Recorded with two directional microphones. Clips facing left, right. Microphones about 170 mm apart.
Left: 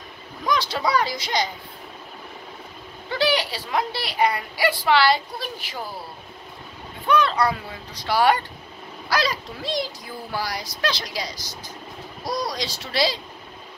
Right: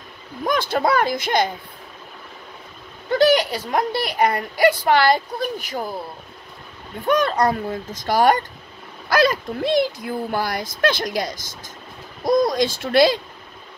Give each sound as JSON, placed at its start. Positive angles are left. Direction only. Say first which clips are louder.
{"t": 0.4, "sound": "speech", "louder": "right 4 dB", "side_deg": -50}
{"t": 3.1, "sound": "a woman's voice", "louder": "right 7 dB", "side_deg": -45}
{"t": 7.1, "sound": "a woman's voice", "louder": "right 2 dB", "side_deg": -45}